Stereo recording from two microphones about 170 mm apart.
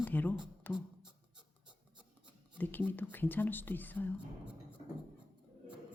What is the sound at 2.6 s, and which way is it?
Speech, 10° left (ahead or behind).